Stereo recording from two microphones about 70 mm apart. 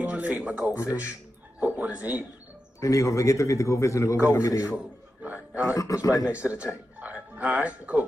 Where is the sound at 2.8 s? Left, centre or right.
Left.